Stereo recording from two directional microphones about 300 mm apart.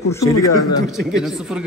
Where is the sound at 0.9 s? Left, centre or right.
Centre.